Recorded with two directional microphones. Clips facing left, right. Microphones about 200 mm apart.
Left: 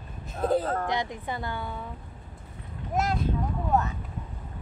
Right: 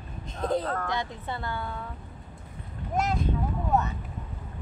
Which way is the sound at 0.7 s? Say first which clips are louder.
Left 2 dB; 20° left (ahead or behind).